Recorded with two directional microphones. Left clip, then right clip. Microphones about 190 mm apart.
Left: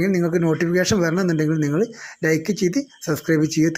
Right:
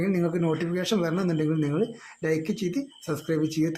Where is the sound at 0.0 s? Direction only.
20° left (ahead or behind).